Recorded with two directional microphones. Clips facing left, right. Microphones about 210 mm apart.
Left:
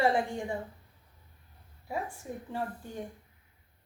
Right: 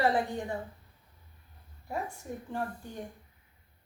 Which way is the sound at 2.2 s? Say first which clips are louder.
Even; 10° left (ahead or behind).